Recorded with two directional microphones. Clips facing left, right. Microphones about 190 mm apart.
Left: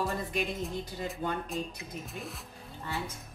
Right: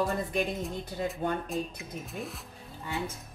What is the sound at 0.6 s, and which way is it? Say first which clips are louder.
Speech: right 2 dB; centre (ahead or behind).